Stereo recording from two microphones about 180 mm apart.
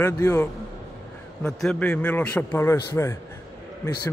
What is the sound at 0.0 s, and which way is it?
A man's voice, 15° left (ahead or behind).